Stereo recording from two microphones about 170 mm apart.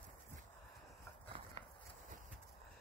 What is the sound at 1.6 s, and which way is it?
Horse, 35° right (ahead or behind).